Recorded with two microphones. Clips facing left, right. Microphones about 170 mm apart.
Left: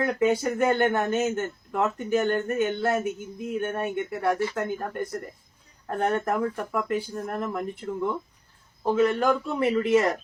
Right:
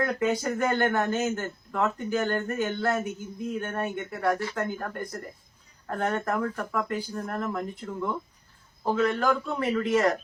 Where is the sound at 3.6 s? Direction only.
25° left (ahead or behind).